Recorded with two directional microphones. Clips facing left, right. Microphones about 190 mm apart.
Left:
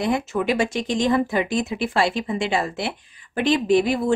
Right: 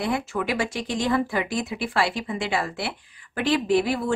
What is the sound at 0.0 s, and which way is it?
Speech, 20° left (ahead or behind).